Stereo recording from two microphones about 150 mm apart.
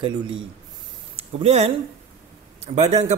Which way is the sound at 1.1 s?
45° right (ahead or behind).